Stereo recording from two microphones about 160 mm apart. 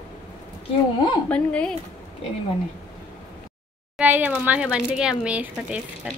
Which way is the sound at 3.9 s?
10° right (ahead or behind).